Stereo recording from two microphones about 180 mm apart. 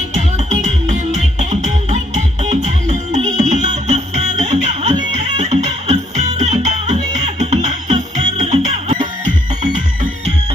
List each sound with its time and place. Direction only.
0.1 s music: 40° right (ahead or behind)